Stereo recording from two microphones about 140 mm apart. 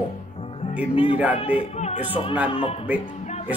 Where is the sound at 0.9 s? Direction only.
40° left (ahead or behind).